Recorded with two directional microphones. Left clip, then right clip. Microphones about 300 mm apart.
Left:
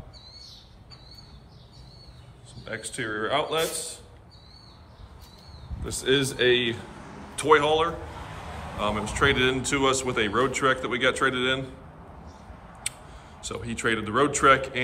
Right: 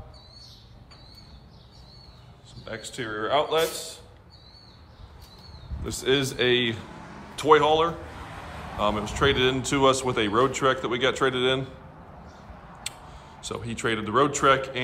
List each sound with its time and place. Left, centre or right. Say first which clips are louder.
2.6 s speech: left 2 dB; centre
5.9 s a man's voice: even; right
12.8 s speech: left 1 dB; centre